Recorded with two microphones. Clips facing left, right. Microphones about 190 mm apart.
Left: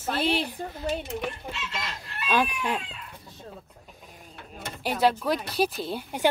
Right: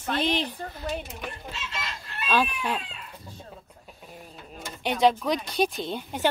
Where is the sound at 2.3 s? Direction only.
15° left (ahead or behind).